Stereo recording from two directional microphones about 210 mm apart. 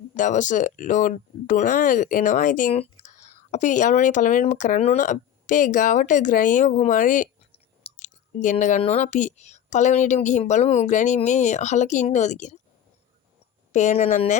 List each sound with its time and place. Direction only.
0.1 s speech: 35° left (ahead or behind)
13.7 s speech: 35° left (ahead or behind)